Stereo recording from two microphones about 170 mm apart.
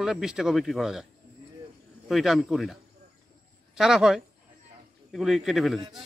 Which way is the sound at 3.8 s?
5° right (ahead or behind).